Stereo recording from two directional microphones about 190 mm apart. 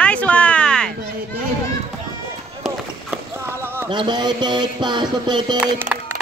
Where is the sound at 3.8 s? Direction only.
25° right (ahead or behind).